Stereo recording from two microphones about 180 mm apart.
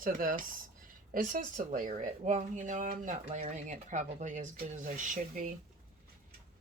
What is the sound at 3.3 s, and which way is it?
Speech, 35° right (ahead or behind).